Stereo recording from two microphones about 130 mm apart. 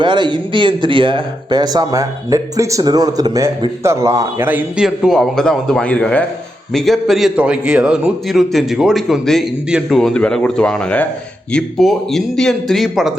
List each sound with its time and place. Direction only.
0.0 s speech: 35° right (ahead or behind)
4.4 s a man's voice: 10° right (ahead or behind)